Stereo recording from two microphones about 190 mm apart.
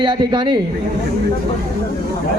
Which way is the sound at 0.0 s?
25° right (ahead or behind).